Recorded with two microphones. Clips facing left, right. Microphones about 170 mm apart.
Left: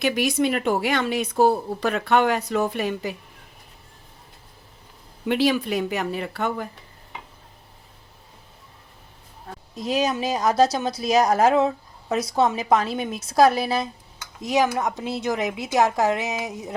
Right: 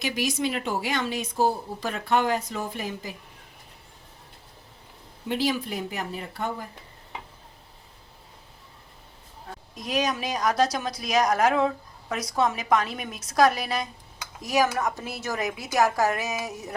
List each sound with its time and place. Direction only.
0.0 s speech: 60° left (ahead or behind)
5.2 s speech: 70° left (ahead or behind)
9.7 s a woman's voice: 30° left (ahead or behind)